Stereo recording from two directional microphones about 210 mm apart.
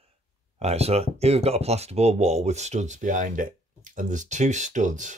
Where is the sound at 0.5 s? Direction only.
30° right (ahead or behind).